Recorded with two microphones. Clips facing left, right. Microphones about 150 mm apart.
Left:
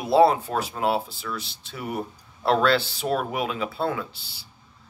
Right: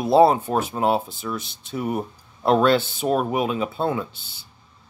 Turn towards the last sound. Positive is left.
turn(degrees=-20)  # may be behind; listen again after turning